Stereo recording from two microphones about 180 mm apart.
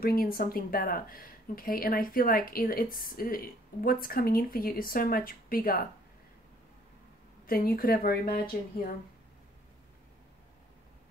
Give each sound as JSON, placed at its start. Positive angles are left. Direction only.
{"t": 0.0, "sound": "speech", "side_deg": 55}
{"t": 7.4, "sound": "speech", "side_deg": 55}